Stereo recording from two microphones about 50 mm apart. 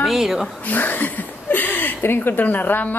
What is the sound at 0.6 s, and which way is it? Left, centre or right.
Speech, left.